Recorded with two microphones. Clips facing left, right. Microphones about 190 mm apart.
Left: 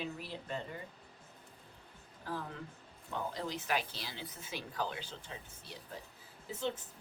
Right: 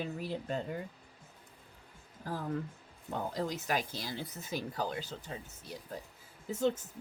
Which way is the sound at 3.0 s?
45° right (ahead or behind).